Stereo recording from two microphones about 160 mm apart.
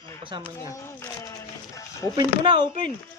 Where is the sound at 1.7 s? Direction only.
20° left (ahead or behind).